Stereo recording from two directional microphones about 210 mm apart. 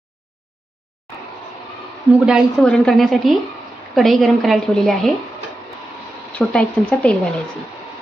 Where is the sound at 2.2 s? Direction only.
Centre (ahead or behind).